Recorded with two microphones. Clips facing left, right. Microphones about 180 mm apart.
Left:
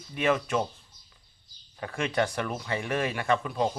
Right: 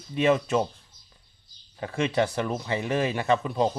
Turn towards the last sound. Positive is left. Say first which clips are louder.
# right 3 dB
turn(degrees=-25)  # may be behind; listen again after turning